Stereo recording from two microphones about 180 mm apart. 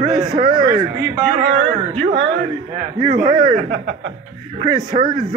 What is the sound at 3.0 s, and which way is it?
Speech, 30° right (ahead or behind).